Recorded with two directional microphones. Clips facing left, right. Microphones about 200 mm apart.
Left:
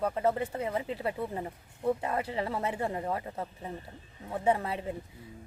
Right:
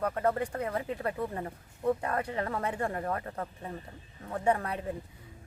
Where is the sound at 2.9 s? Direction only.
15° left (ahead or behind).